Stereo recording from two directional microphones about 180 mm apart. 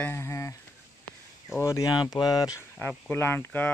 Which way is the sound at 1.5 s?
15° left (ahead or behind).